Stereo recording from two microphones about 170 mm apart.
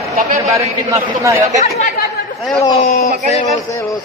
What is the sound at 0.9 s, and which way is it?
Speech, 20° right (ahead or behind).